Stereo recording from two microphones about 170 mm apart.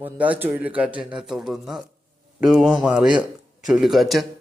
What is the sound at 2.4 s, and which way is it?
Speech, 5° right (ahead or behind).